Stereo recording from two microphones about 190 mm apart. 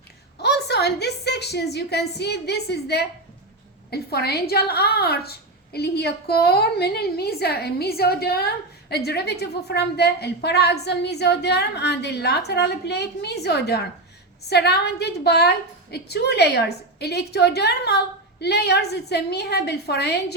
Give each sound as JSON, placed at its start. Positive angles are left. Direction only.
{"t": 0.4, "sound": "a woman's voice", "side_deg": 60}